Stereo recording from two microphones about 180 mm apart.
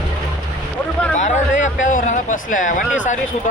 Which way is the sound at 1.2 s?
40° left (ahead or behind).